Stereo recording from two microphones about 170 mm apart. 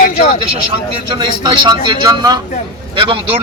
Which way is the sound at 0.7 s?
30° right (ahead or behind).